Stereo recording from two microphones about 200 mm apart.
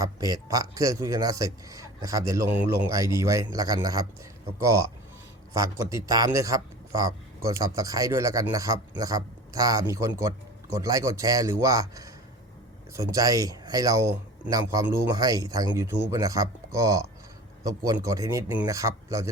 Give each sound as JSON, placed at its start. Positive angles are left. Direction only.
{"t": 0.0, "sound": "a man's voice", "side_deg": -20}
{"t": 5.5, "sound": "a man's voice", "side_deg": -15}